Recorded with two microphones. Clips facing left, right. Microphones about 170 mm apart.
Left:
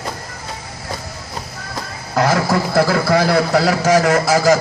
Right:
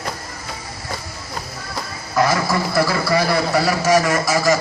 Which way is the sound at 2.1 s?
65° left (ahead or behind).